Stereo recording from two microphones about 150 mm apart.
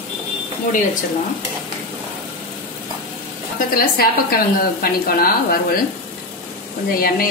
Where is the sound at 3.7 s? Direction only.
80° left.